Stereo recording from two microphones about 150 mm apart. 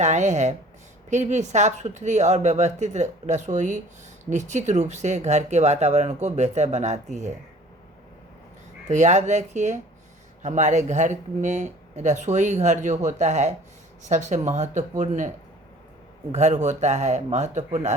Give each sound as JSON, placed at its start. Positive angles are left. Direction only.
{"t": 0.0, "sound": "speech", "side_deg": -50}
{"t": 8.9, "sound": "speech", "side_deg": -50}
{"t": 16.3, "sound": "speech", "side_deg": -50}